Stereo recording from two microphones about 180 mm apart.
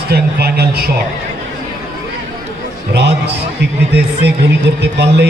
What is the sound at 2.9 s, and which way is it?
Speech, 70° right (ahead or behind).